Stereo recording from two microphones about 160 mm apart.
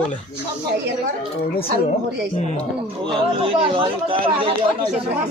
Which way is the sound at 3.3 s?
35° right (ahead or behind).